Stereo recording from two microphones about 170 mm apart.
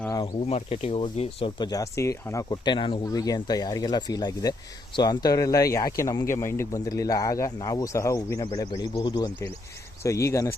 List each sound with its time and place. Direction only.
0.4 s speech: 40° left (ahead or behind); by 10.5 s 15° left (ahead or behind)